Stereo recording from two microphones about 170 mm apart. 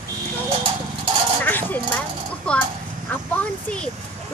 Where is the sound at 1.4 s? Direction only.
10° left (ahead or behind).